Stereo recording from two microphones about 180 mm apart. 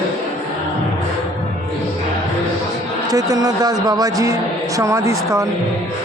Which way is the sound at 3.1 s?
20° right (ahead or behind).